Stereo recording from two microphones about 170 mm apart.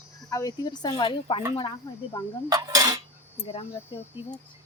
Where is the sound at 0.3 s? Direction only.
20° left (ahead or behind).